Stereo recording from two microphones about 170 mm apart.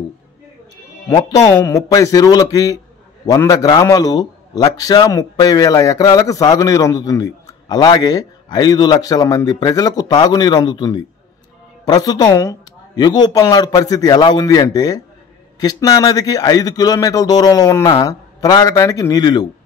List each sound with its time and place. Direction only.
1.0 s a man's voice: 20° left (ahead or behind)